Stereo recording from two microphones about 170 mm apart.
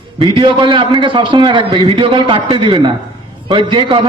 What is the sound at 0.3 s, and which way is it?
A man's voice, 30° right (ahead or behind).